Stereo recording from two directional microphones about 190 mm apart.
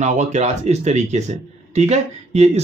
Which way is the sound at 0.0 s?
40° right (ahead or behind).